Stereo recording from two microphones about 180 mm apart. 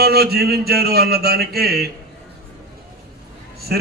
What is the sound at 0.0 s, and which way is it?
A man's voice, 60° right (ahead or behind).